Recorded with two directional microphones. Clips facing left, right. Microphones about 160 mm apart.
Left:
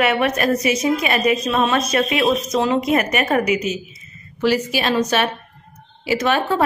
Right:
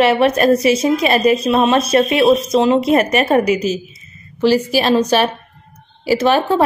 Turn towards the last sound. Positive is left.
turn(degrees=-30)  # may be behind; listen again after turning